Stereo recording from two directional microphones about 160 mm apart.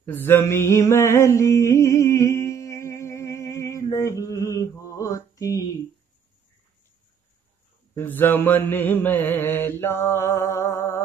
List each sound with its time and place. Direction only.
0.0 s mantra: 10° left (ahead or behind)
7.9 s mantra: 15° left (ahead or behind)